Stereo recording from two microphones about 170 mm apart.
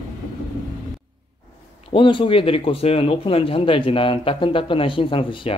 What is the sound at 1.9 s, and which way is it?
Speech, 30° left (ahead or behind).